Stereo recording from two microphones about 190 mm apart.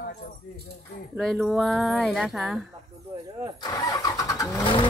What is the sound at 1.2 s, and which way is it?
Speech, centre (ahead or behind).